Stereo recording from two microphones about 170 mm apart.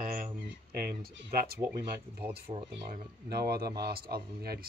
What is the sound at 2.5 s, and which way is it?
Speech, 25° right (ahead or behind).